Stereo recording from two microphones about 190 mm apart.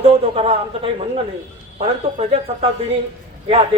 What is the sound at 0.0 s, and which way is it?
Speech, 30° right (ahead or behind).